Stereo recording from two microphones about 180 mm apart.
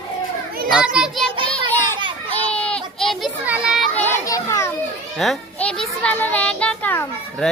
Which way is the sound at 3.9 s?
15° left (ahead or behind).